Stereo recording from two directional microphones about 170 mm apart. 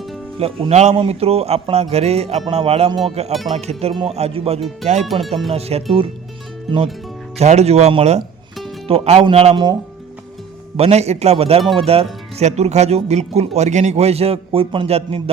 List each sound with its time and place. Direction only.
0.3 s speech: 35° right (ahead or behind)
7.3 s speech: 40° right (ahead or behind)
10.8 s speech: 40° right (ahead or behind)